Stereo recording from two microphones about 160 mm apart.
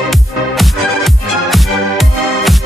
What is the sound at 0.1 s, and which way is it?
Music, centre (ahead or behind).